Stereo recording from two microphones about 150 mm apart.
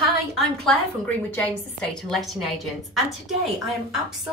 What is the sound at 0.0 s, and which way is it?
A woman's voice, centre (ahead or behind).